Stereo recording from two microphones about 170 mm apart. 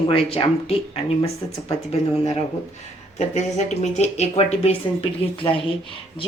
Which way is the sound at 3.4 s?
40° left (ahead or behind).